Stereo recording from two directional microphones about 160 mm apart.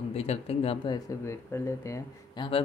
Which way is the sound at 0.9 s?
15° left (ahead or behind).